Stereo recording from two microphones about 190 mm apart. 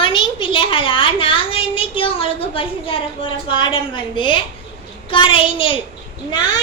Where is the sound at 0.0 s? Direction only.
30° left (ahead or behind).